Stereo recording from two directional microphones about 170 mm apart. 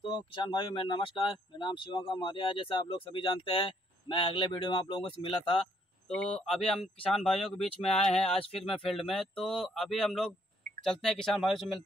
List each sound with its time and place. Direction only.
0.0 s speech: 30° left (ahead or behind)
6.0 s speech: 5° left (ahead or behind)